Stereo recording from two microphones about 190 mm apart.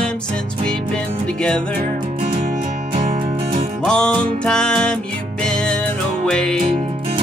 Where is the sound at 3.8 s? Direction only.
5° left (ahead or behind).